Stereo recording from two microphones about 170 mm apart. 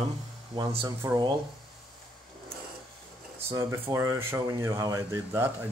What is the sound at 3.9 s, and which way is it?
Speech, 15° right (ahead or behind).